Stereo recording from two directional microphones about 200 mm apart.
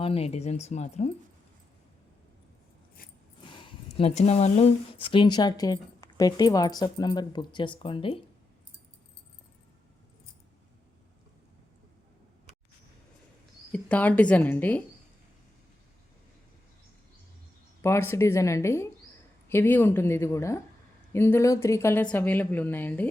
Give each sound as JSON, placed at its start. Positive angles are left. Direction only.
{"t": 0.0, "sound": "speech", "side_deg": 30}
{"t": 3.0, "sound": "a sound", "side_deg": 45}
{"t": 3.4, "sound": "speech", "side_deg": 25}
{"t": 13.7, "sound": "a woman's voice", "side_deg": 5}
{"t": 17.8, "sound": "a woman's voice", "side_deg": 10}